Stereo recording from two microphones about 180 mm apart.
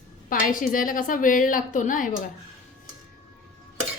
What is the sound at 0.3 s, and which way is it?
A woman's voice, 50° left (ahead or behind).